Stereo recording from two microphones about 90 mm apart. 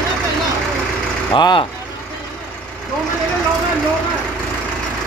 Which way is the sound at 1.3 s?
60° left (ahead or behind).